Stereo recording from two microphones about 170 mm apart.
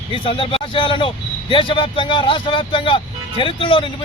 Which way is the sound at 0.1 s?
30° left (ahead or behind).